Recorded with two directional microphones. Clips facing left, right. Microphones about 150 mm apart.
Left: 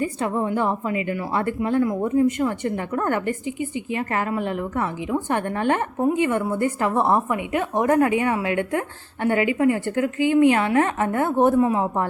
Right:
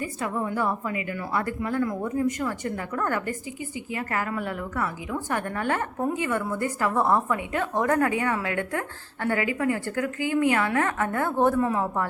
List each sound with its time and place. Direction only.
0.0 s a woman's voice: 25° left (ahead or behind)